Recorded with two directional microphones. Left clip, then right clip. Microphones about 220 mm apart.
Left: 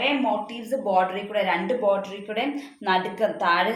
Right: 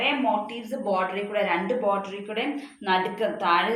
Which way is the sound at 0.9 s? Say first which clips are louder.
Left 3 dB; 50° left (ahead or behind).